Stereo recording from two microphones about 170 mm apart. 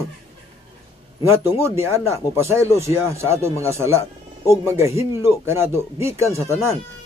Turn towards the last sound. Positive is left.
turn(degrees=-15)  # may be behind; listen again after turning